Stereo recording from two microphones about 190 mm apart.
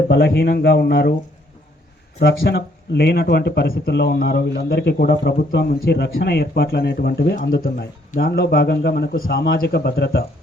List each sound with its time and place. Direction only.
0.1 s speech: 60° left (ahead or behind)
2.1 s speech: 60° left (ahead or behind)